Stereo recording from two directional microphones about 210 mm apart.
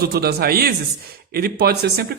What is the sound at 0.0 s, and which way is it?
Speech, 50° right (ahead or behind).